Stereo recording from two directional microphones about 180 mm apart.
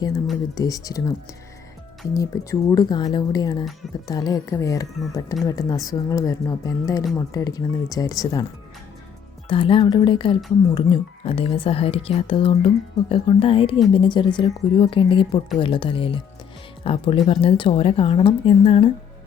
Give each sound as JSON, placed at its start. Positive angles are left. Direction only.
{"t": 0.5, "sound": "speech", "side_deg": 20}
{"t": 2.1, "sound": "speech", "side_deg": 15}
{"t": 9.5, "sound": "speech", "side_deg": 30}